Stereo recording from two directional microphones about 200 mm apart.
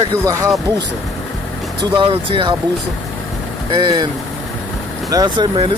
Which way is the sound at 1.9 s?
25° right (ahead or behind).